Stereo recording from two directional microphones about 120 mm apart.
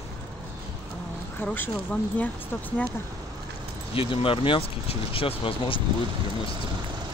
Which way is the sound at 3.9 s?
50° left (ahead or behind).